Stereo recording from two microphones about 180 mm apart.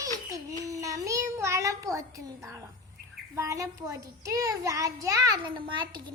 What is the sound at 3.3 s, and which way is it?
A child's voice, 15° right (ahead or behind).